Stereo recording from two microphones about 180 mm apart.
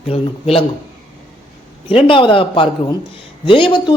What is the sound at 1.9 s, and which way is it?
Speech, 30° left (ahead or behind).